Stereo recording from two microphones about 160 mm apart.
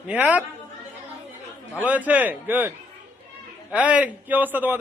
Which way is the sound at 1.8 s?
10° right (ahead or behind).